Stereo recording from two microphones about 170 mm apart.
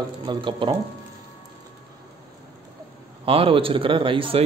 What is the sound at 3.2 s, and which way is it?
Speech, 35° right (ahead or behind).